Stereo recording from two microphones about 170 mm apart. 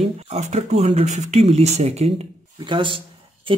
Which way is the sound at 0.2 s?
40° right (ahead or behind).